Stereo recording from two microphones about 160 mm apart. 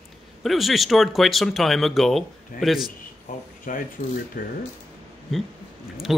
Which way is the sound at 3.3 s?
55° left (ahead or behind).